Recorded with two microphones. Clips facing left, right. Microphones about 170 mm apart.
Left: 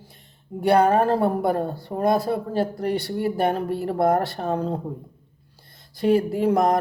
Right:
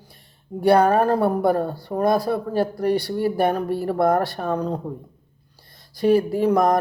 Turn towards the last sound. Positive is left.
turn(degrees=25)  # may be behind; listen again after turning